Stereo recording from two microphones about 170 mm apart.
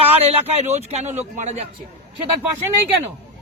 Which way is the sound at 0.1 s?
35° right (ahead or behind).